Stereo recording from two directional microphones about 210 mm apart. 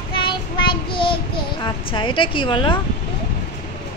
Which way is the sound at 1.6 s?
25° left (ahead or behind).